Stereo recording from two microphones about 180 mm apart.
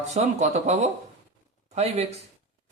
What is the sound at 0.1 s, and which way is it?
A man's voice, 40° right (ahead or behind).